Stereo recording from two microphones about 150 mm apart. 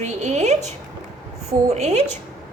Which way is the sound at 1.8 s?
45° right (ahead or behind).